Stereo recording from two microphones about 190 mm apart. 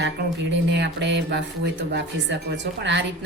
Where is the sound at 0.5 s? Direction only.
65° right (ahead or behind).